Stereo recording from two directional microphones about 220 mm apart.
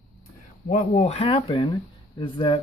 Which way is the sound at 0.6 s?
30° left (ahead or behind).